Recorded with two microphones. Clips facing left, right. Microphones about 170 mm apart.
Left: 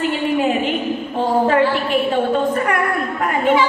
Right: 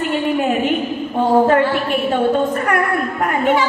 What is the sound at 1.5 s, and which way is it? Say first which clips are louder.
Speech: right 1 dB; 50° right (ahead or behind).